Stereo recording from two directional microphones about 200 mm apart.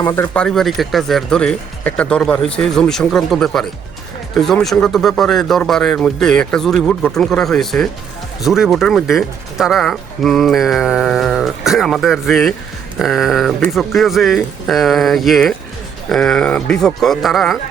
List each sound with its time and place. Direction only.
0.0 s speech: 20° left (ahead or behind)
0.3 s speech: centre (ahead or behind)